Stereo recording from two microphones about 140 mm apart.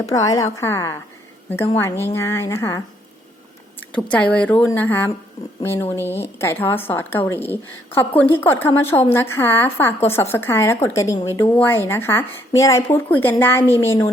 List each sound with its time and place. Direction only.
0.1 s a woman's voice: 25° left (ahead or behind)